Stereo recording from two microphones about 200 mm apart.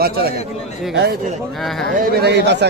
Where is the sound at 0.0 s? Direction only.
50° right (ahead or behind).